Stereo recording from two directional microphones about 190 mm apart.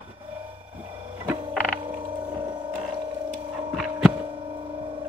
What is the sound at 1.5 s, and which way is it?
Frog, 5° left (ahead or behind).